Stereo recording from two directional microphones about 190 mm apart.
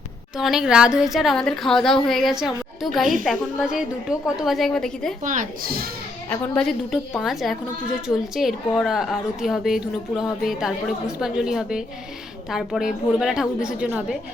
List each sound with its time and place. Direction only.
0.3 s a woman's voice: centre (ahead or behind)
5.2 s speech: 45° right (ahead or behind)
6.2 s a woman's voice: 10° left (ahead or behind)